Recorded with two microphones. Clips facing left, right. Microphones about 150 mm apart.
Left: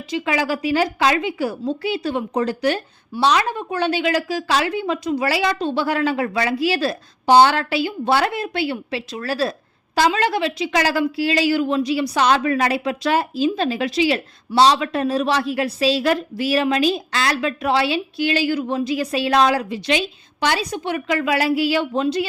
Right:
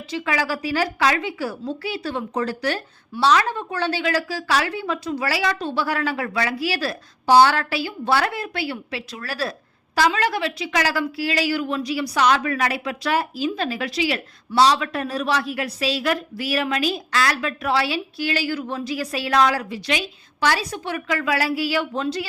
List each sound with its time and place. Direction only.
0.1 s a woman's voice: 20° left (ahead or behind)